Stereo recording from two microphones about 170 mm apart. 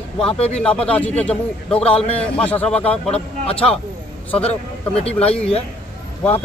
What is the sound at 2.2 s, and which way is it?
Speech, 5° left (ahead or behind).